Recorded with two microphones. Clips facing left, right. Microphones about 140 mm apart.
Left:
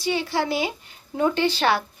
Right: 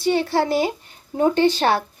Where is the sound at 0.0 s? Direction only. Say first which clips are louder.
Right 5 dB; 50° right (ahead or behind).